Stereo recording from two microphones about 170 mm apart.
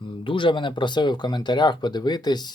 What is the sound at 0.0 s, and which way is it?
Speech, 30° left (ahead or behind).